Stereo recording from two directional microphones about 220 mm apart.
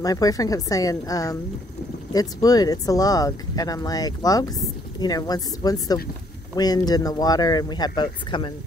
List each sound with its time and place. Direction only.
0.0 s speech: 15° left (ahead or behind)